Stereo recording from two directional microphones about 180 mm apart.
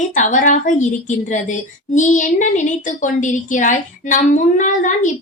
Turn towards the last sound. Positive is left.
turn(degrees=45)  # may be behind; listen again after turning